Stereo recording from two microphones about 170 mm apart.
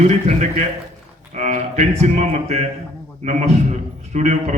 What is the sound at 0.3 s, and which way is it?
A man's voice, 45° right (ahead or behind).